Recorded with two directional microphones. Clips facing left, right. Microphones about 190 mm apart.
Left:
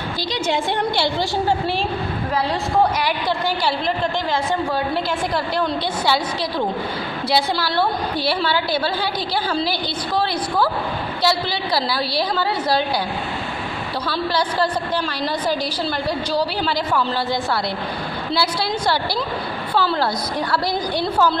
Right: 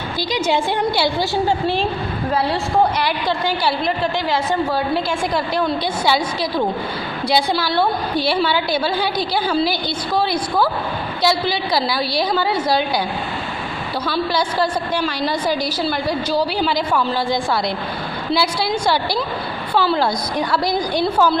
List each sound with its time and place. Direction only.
0.5 s a woman's voice: 5° right (ahead or behind)
3.3 s a woman's voice: 10° right (ahead or behind)
7.2 s a woman's voice: 15° right (ahead or behind)
14.3 s a woman's voice: 10° right (ahead or behind)